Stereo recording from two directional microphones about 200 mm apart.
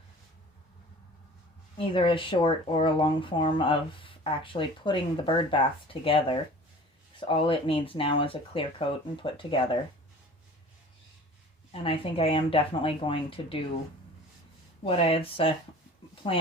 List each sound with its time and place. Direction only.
1.8 s speech: 25° left (ahead or behind)
11.7 s speech: 25° left (ahead or behind)
14.8 s speech: 30° left (ahead or behind)